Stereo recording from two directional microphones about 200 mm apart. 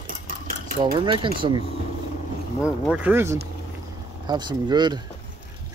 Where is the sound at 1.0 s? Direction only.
25° right (ahead or behind).